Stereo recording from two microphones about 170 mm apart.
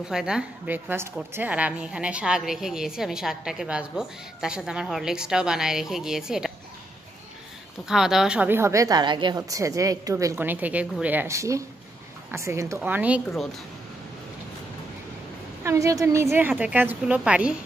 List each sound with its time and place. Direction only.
0.1 s a woman's voice: 5° right (ahead or behind)
7.9 s speech: 5° right (ahead or behind)
15.6 s speech: 20° right (ahead or behind)